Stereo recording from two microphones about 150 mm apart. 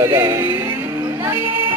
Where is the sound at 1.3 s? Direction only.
15° right (ahead or behind).